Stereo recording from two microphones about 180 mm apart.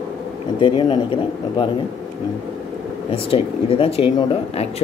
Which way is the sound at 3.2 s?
30° left (ahead or behind).